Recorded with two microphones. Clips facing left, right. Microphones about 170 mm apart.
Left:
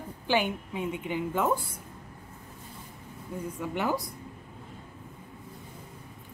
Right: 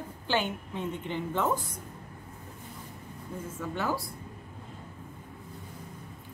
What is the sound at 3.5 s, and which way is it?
Speech, 20° left (ahead or behind).